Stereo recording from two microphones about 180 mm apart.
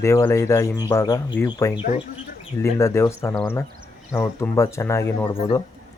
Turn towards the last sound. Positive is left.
turn(degrees=30)  # may be behind; listen again after turning